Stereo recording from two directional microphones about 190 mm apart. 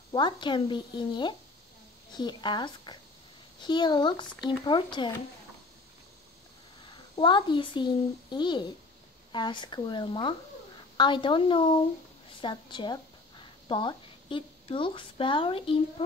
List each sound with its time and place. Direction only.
0.1 s a woman's voice: 25° left (ahead or behind)
6.9 s a woman's voice: 25° left (ahead or behind)